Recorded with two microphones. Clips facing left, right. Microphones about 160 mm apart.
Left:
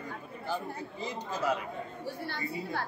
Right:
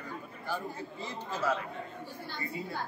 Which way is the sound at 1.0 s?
15° left (ahead or behind).